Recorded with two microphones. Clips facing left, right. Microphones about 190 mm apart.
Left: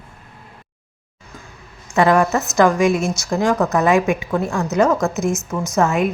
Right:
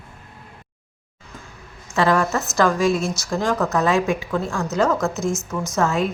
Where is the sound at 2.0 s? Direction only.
15° left (ahead or behind).